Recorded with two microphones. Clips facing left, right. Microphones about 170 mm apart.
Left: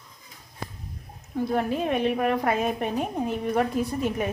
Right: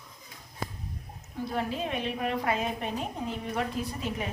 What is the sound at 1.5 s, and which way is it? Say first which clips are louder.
A woman's voice: left 6 dB; 55° left (ahead or behind).